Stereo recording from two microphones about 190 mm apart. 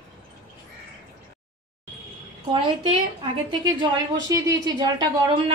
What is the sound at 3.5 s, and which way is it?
Speech, 25° right (ahead or behind).